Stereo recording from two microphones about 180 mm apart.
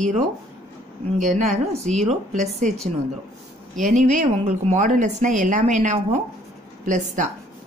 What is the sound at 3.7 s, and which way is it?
A woman's voice, 45° right (ahead or behind).